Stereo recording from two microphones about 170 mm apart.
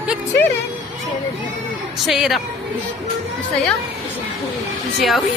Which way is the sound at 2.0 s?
Centre (ahead or behind).